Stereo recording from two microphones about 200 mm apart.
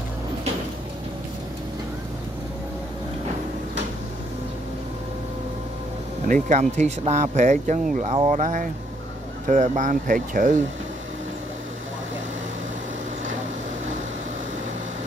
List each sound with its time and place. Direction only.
6.2 s speech: 40° right (ahead or behind)